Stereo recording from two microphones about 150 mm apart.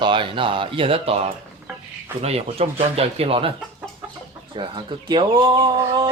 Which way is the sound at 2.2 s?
45° right (ahead or behind).